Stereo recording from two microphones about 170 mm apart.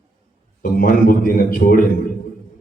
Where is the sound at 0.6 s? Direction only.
55° left (ahead or behind).